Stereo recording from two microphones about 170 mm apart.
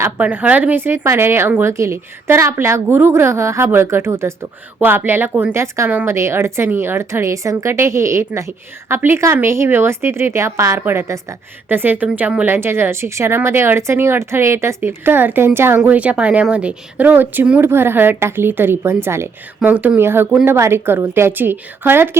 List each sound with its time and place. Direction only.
0.0 s a woman's voice: 10° right (ahead or behind)